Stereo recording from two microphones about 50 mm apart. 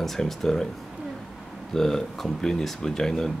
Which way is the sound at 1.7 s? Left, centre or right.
Centre.